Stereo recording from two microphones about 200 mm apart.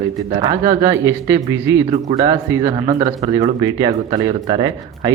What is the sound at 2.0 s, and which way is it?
Speech, 25° right (ahead or behind).